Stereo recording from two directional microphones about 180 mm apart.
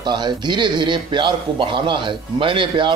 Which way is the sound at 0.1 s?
25° right (ahead or behind).